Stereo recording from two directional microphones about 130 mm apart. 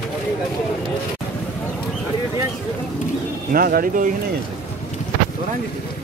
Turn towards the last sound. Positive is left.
turn(degrees=-90)